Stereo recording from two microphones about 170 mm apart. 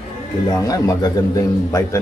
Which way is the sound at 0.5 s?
20° left (ahead or behind).